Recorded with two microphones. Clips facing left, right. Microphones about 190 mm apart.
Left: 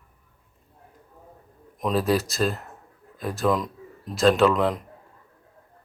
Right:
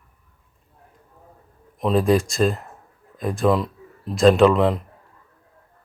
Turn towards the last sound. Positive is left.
turn(degrees=0)  # may be behind; listen again after turning